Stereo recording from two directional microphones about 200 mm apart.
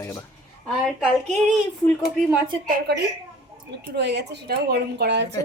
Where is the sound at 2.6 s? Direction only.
55° right (ahead or behind).